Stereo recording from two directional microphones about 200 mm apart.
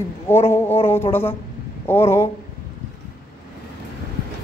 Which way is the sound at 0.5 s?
10° left (ahead or behind).